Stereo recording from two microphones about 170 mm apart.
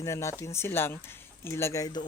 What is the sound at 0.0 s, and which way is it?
Speech, 15° left (ahead or behind).